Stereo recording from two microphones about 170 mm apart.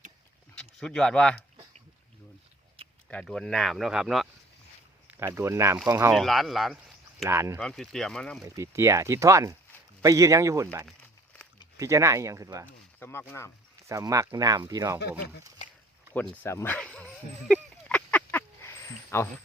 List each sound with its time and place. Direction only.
0.5 s speech: 5° left (ahead or behind)
3.1 s speech: 5° left (ahead or behind)
5.0 s speech: 15° right (ahead or behind)
6.1 s speech: centre (ahead or behind)
7.3 s speech: 15° right (ahead or behind)
7.6 s speech: 5° left (ahead or behind)
8.4 s speech: 20° right (ahead or behind)
11.8 s speech: 20° right (ahead or behind)
13.0 s speech: 15° left (ahead or behind)
13.8 s speech: 20° right (ahead or behind)
16.1 s speech: 10° left (ahead or behind)
17.5 s a sound: 10° left (ahead or behind)